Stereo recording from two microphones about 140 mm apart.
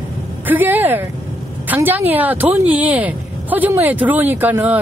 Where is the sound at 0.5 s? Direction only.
15° right (ahead or behind).